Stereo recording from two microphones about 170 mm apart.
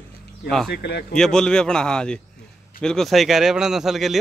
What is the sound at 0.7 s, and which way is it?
Speech, 75° left (ahead or behind).